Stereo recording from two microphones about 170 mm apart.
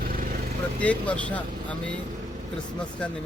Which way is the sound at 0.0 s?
60° right (ahead or behind).